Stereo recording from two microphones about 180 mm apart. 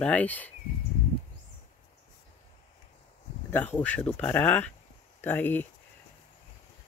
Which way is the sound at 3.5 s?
10° left (ahead or behind).